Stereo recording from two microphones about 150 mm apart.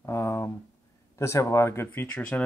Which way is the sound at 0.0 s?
20° left (ahead or behind).